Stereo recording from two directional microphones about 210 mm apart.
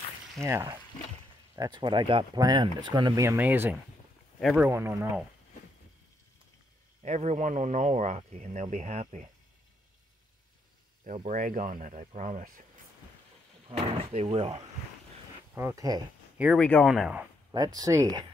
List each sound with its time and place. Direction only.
0.4 s speech: 10° right (ahead or behind)
4.4 s speech: centre (ahead or behind)
4.6 s speech: 10° right (ahead or behind)
7.0 s speech: 35° right (ahead or behind)
11.1 s speech: 35° right (ahead or behind)
13.7 s speech: 25° right (ahead or behind)
15.5 s speech: 15° right (ahead or behind)
16.4 s speech: 5° left (ahead or behind)
17.7 s speech: 15° right (ahead or behind)